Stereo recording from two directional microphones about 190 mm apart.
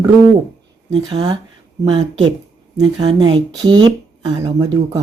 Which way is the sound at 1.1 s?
20° right (ahead or behind).